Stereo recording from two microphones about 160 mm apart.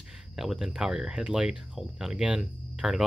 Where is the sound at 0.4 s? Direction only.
5° right (ahead or behind).